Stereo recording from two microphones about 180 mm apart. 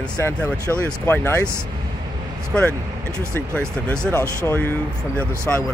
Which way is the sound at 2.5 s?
5° left (ahead or behind).